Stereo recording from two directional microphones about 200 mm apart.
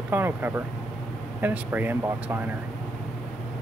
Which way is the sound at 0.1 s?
10° right (ahead or behind).